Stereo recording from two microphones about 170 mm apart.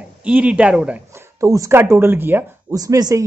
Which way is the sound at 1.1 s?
15° right (ahead or behind).